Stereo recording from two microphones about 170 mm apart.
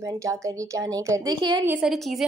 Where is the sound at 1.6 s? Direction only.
5° right (ahead or behind).